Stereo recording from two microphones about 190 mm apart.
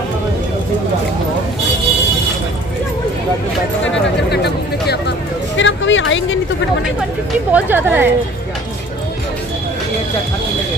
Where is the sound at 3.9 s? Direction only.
60° left (ahead or behind); by 6.4 s 80° left.